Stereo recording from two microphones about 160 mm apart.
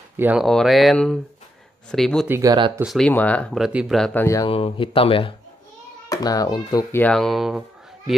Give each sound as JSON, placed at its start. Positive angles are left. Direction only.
{"t": 0.2, "sound": "speech", "side_deg": -10}
{"t": 0.5, "sound": "speech", "side_deg": 0}
{"t": 2.2, "sound": "speech", "side_deg": -15}
{"t": 2.8, "sound": "speech", "side_deg": 0}
{"t": 3.1, "sound": "speech", "side_deg": 10}
{"t": 3.5, "sound": "speech", "side_deg": 0}
{"t": 4.5, "sound": "speech", "side_deg": 35}
{"t": 6.0, "sound": "speech", "side_deg": 25}
{"t": 7.0, "sound": "speech", "side_deg": 5}